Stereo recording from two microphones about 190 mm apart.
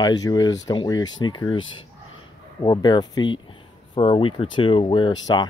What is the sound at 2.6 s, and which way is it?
Speech, 25° left (ahead or behind).